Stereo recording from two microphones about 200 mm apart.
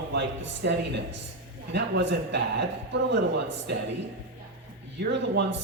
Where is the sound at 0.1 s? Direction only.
60° right (ahead or behind).